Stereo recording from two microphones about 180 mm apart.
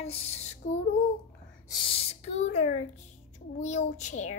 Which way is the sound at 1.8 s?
30° left (ahead or behind).